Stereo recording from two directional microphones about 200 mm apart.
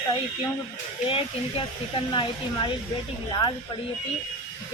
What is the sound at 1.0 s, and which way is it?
Speech, 25° left (ahead or behind).